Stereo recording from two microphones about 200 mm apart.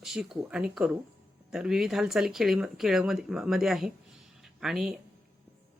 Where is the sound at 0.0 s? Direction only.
Centre (ahead or behind).